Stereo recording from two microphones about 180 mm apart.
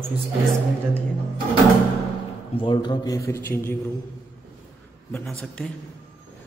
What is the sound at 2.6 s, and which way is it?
A man's voice, 25° left (ahead or behind).